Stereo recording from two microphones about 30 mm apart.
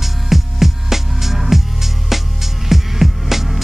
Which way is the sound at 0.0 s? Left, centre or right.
Centre.